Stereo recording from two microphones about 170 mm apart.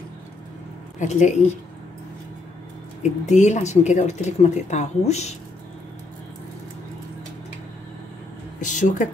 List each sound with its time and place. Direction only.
0.9 s speech: 45° left (ahead or behind)
3.0 s speech: 45° left (ahead or behind)
8.5 s speech: 45° left (ahead or behind)